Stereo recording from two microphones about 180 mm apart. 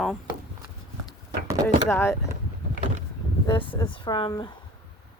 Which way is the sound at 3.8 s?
25° left (ahead or behind).